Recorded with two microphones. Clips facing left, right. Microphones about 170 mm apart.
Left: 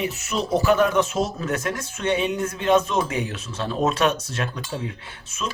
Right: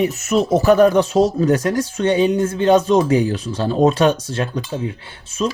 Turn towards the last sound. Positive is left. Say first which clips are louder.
# right 9 dB
turn(degrees=-40)  # may be behind; listen again after turning